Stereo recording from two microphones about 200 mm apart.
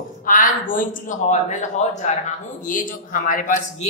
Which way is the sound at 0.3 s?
40° left (ahead or behind).